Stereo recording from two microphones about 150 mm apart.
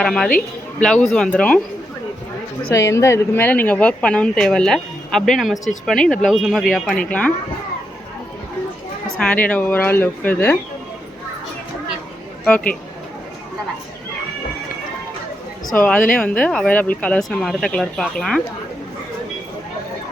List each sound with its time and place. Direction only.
0.0 s speech: 5° left (ahead or behind)
2.7 s speech: 20° left (ahead or behind)
9.1 s speech: 10° left (ahead or behind)
12.5 s speech: 10° left (ahead or behind)
15.6 s speech: 15° left (ahead or behind)